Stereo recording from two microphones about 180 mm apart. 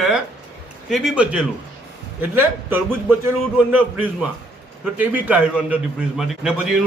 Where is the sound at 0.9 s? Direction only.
Centre (ahead or behind).